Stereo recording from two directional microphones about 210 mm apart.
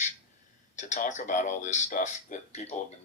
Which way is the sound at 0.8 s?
35° left (ahead or behind).